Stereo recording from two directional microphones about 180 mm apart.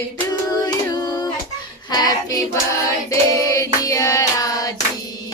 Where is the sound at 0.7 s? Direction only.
20° left (ahead or behind).